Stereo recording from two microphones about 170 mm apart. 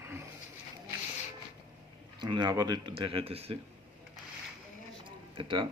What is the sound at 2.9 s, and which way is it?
Speech, 35° right (ahead or behind).